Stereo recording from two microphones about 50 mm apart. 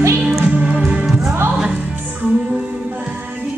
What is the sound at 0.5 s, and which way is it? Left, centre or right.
Music, right.